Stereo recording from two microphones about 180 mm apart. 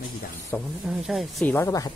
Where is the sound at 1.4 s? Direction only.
15° left (ahead or behind).